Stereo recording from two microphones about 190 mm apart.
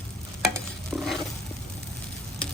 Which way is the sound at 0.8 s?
Centre (ahead or behind).